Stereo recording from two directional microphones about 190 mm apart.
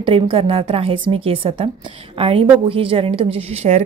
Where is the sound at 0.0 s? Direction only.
30° right (ahead or behind).